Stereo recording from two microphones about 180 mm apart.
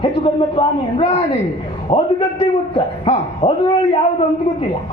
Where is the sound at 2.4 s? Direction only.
35° left (ahead or behind).